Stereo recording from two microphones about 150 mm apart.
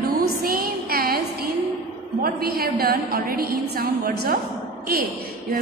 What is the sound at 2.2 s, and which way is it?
A woman's voice, 90° right.